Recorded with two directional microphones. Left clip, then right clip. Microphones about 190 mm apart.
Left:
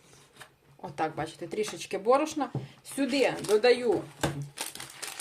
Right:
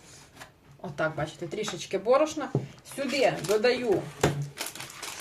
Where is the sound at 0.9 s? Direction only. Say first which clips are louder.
Right 2 dB; 50° left (ahead or behind).